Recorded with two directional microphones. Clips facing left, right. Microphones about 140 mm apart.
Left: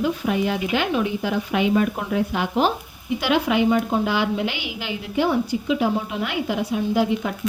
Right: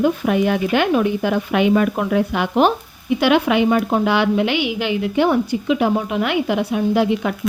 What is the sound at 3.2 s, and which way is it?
A woman's voice, 65° right (ahead or behind).